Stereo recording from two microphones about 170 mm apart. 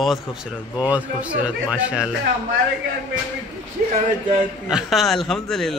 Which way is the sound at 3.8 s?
55° right (ahead or behind).